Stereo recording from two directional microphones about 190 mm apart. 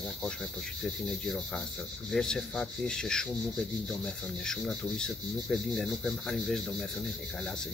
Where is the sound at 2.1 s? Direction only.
Centre (ahead or behind).